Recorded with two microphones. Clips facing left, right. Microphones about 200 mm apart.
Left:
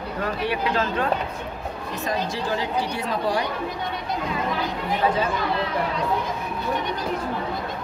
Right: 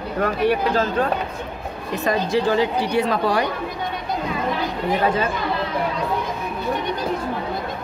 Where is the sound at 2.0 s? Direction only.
60° right (ahead or behind).